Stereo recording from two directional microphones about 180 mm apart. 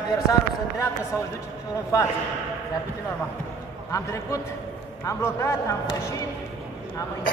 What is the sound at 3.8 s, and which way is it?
Speech, 15° left (ahead or behind).